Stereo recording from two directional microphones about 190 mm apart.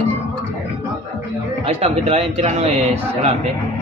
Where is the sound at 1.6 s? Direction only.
35° right (ahead or behind).